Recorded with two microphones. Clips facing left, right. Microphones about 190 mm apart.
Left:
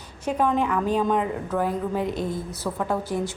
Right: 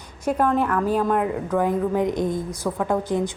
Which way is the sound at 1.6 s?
15° right (ahead or behind).